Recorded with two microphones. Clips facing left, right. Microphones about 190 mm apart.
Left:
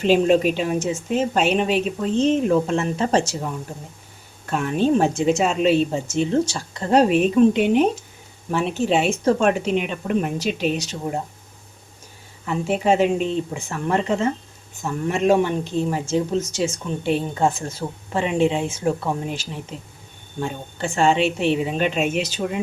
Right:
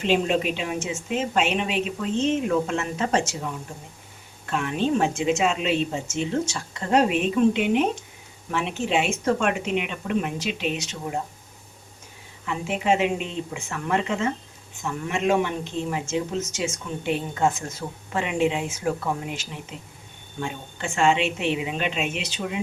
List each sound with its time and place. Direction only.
0.0 s speech: 40° left (ahead or behind)
4.4 s speech: 40° left (ahead or behind)
12.5 s speech: 40° left (ahead or behind)